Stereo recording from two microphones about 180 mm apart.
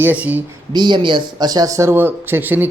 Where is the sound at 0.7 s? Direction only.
25° right (ahead or behind).